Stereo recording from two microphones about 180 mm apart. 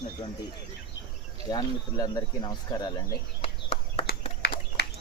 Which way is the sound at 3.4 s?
35° left (ahead or behind).